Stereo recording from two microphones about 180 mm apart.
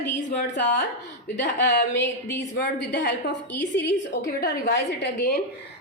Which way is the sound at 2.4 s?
75° left (ahead or behind).